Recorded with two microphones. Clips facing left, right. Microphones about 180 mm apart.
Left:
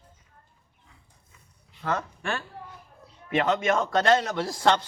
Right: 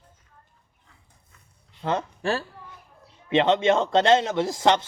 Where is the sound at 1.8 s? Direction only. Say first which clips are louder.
Right 3 dB; 25° right (ahead or behind).